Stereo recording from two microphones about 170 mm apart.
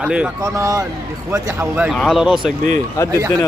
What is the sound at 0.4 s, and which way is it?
Speech, 20° right (ahead or behind).